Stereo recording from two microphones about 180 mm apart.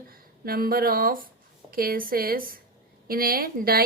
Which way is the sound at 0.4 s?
55° right (ahead or behind).